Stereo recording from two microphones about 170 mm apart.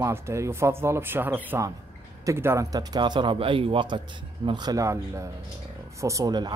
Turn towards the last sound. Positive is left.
turn(degrees=-20)  # may be behind; listen again after turning